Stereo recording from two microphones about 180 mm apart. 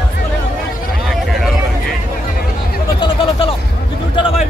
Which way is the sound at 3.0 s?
25° left (ahead or behind).